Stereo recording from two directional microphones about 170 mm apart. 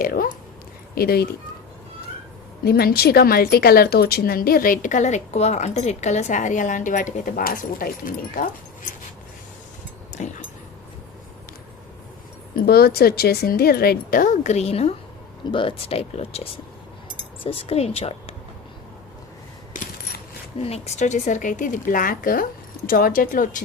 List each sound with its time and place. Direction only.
0.0 s a sound: 55° left (ahead or behind)
0.9 s speech: 65° left (ahead or behind)
2.6 s a woman's voice: 70° left (ahead or behind)
12.5 s a woman's voice: 65° left (ahead or behind); by 18.3 s 35° left (ahead or behind)
20.6 s a woman's voice: 35° left (ahead or behind)